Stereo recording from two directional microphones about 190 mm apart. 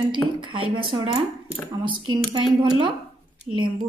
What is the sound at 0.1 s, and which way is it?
Speech, 25° right (ahead or behind).